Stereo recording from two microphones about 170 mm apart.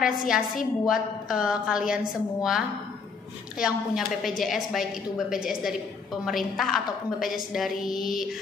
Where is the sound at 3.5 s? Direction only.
5° right (ahead or behind).